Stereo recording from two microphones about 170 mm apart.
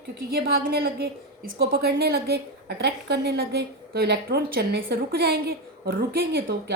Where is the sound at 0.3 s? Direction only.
60° right (ahead or behind).